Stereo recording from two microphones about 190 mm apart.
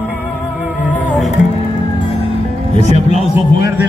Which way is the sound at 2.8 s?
35° left (ahead or behind).